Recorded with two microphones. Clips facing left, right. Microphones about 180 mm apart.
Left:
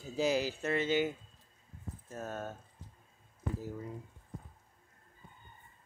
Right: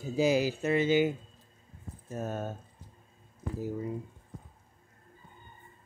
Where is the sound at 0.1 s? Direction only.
10° right (ahead or behind).